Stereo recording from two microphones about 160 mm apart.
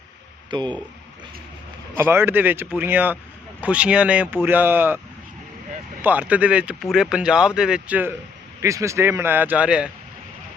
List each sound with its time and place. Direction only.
0.5 s speech: 30° right (ahead or behind)
2.0 s speech: 15° right (ahead or behind)
6.0 s speech: 10° right (ahead or behind)